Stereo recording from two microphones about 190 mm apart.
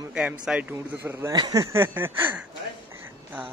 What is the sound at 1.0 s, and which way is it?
A man's voice, 20° right (ahead or behind).